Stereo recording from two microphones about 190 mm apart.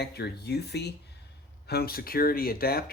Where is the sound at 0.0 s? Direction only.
60° left (ahead or behind).